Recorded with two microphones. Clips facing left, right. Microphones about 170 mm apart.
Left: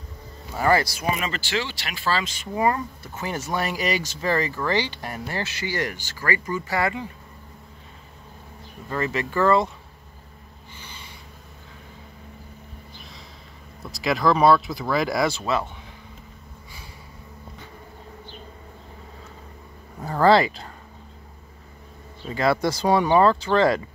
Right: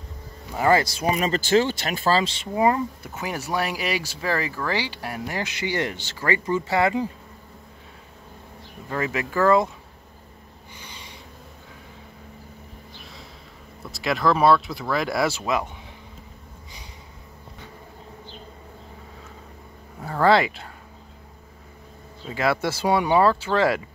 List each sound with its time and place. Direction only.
0.6 s speech: 20° right (ahead or behind)
1.1 s speech: 40° right (ahead or behind); by 7.0 s 20° right (ahead or behind)
8.8 s speech: 10° right (ahead or behind)
10.8 s snort: 15° right (ahead or behind)
13.9 s speech: centre (ahead or behind)
20.0 s a sound: centre (ahead or behind)
22.3 s speech: 5° right (ahead or behind)